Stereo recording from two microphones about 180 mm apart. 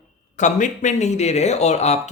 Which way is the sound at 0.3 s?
45° left (ahead or behind).